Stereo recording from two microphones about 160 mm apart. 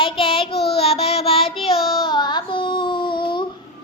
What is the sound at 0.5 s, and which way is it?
Child singing, 90° left.